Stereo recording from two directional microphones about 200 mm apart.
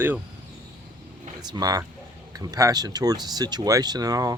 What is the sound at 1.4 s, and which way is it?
Speech, 20° right (ahead or behind).